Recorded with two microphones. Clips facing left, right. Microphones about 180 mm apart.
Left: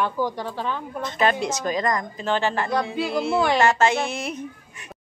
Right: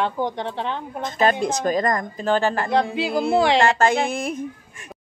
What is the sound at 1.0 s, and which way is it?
A woman's voice, 40° right (ahead or behind).